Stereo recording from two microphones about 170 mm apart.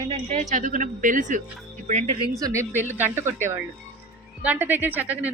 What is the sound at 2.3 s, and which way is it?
A woman's voice, 20° right (ahead or behind).